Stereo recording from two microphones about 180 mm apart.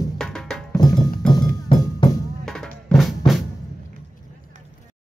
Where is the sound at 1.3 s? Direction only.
25° left (ahead or behind).